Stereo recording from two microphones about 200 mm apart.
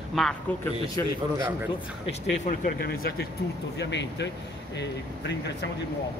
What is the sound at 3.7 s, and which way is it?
Speech, 60° left (ahead or behind).